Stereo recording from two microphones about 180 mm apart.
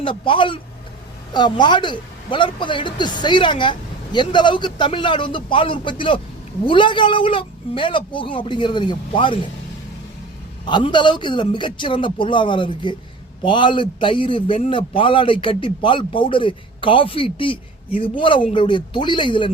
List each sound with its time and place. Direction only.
0.0 s a man's voice: 30° left (ahead or behind)
10.7 s a man's voice: 25° left (ahead or behind)